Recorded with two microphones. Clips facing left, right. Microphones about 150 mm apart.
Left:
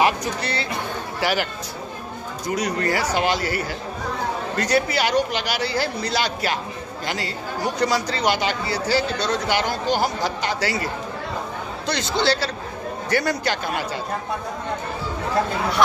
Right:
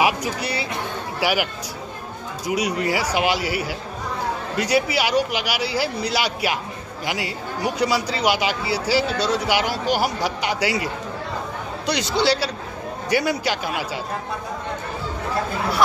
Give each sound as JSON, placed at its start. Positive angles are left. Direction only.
{"t": 0.0, "sound": "a man's voice", "side_deg": -10}